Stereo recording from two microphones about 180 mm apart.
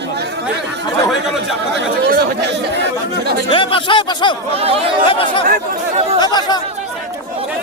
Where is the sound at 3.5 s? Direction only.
30° left (ahead or behind).